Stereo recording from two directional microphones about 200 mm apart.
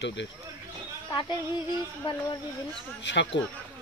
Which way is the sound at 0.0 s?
60° left (ahead or behind).